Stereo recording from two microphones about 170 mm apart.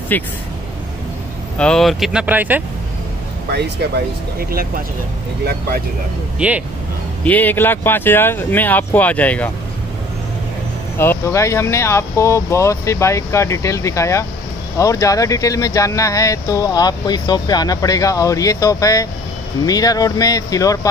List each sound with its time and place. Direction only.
0.1 s speech: 10° left (ahead or behind)
1.6 s speech: 5° left (ahead or behind)
3.5 s speech: 75° right (ahead or behind)
6.4 s speech: 5° right (ahead or behind)
7.2 s speech: 10° left (ahead or behind)
11.0 s speech: 15° left (ahead or behind)